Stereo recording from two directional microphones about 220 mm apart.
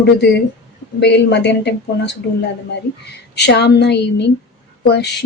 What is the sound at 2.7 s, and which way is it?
Speech, 50° left (ahead or behind).